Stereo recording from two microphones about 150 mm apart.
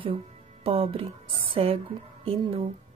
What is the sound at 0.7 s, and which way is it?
Speech, 40° right (ahead or behind).